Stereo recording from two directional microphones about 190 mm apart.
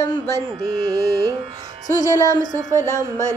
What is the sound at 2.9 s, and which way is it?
Speech, 15° left (ahead or behind).